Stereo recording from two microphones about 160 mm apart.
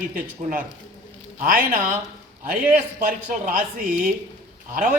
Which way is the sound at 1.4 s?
60° right (ahead or behind).